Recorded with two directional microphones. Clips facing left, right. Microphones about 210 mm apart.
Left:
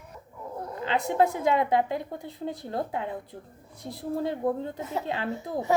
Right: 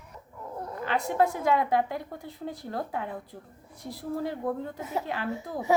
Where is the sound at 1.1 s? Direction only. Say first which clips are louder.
Left 1 dB; 20° left (ahead or behind).